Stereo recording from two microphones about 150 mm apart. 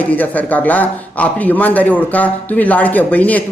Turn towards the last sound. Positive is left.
turn(degrees=10)  # may be behind; listen again after turning